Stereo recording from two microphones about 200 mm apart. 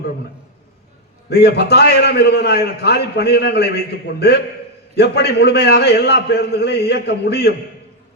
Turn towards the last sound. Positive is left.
turn(degrees=55)  # may be behind; listen again after turning